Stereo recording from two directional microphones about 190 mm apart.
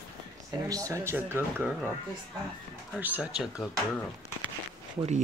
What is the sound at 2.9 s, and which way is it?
Speech, 10° right (ahead or behind).